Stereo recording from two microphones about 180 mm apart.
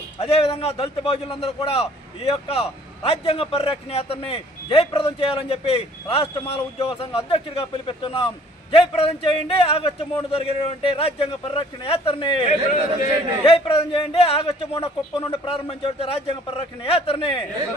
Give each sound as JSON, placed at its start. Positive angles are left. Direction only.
{"t": 0.2, "sound": "a man's voice", "side_deg": 35}